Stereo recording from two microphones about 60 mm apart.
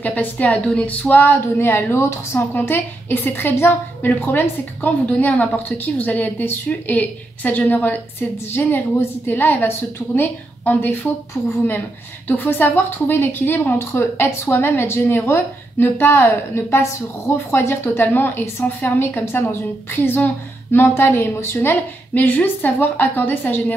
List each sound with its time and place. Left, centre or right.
0.0 s a woman's voice: left
5.0 s a woman's voice: left
12.3 s a woman's voice: left